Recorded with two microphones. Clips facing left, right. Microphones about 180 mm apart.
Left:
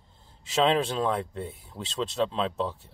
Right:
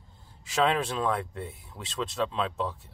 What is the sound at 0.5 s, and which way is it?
Speech, 30° left (ahead or behind).